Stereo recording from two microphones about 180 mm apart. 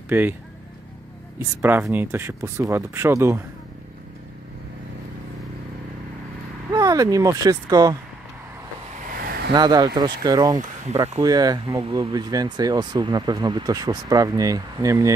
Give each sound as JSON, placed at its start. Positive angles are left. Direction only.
{"t": 0.1, "sound": "speech", "side_deg": -10}
{"t": 1.6, "sound": "speech", "side_deg": -10}
{"t": 6.7, "sound": "speech", "side_deg": -20}
{"t": 8.9, "sound": "a sound", "side_deg": -50}
{"t": 9.5, "sound": "speech", "side_deg": -20}